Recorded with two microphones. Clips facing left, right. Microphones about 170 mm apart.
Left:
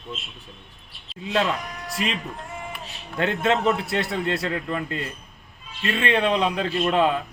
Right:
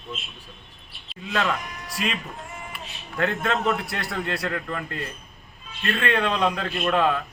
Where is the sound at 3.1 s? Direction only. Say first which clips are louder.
Left 3 dB; 25° left (ahead or behind).